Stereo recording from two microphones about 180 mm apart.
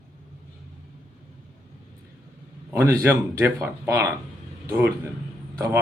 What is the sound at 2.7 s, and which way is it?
A man's voice, 10° right (ahead or behind).